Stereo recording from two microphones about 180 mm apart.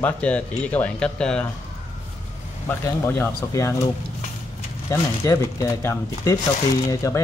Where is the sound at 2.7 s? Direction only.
10° left (ahead or behind).